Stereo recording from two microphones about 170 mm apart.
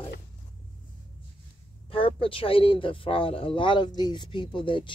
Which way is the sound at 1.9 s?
30° left (ahead or behind).